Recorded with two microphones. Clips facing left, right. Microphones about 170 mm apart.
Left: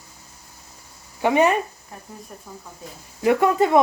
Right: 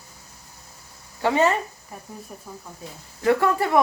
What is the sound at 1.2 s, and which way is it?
Speech, 15° left (ahead or behind).